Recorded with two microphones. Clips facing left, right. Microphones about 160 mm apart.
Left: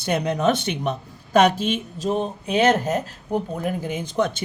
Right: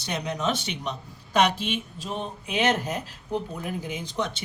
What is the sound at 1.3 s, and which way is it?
Speech, 45° left (ahead or behind).